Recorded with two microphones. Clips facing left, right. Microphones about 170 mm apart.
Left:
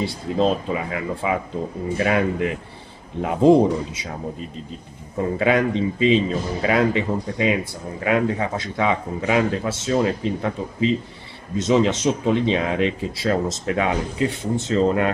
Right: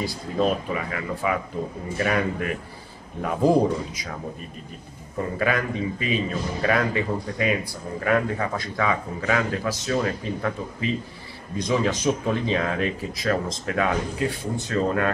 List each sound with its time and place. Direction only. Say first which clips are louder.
0.0 s a man's voice: left 3 dB; 25° left (ahead or behind)
5.4 s a man's voice: left 6 dB; 25° left (ahead or behind)